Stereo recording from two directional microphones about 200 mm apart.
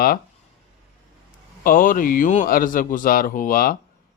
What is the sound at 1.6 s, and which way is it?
Speech, 45° left (ahead or behind).